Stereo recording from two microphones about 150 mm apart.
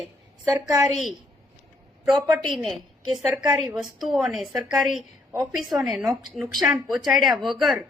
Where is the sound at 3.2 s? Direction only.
20° right (ahead or behind).